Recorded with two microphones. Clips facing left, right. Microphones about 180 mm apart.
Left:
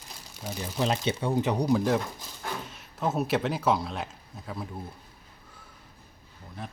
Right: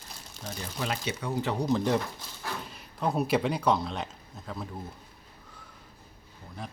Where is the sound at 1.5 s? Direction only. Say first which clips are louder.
Even; 15° left (ahead or behind).